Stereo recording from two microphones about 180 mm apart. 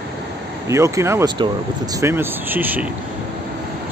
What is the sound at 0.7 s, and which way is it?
Speech, 15° right (ahead or behind).